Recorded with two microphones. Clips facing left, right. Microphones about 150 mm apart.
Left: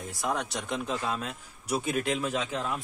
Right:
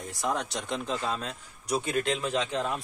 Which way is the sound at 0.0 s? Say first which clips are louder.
Right 1 dB; centre (ahead or behind).